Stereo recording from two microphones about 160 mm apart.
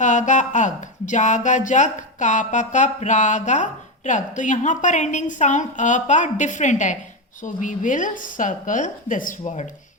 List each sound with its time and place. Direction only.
0.0 s speech: 50° left (ahead or behind)